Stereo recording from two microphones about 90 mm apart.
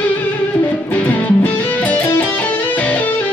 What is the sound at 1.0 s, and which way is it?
Music, 20° left (ahead or behind).